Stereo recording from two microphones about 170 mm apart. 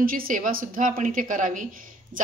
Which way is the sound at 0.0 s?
55° right (ahead or behind).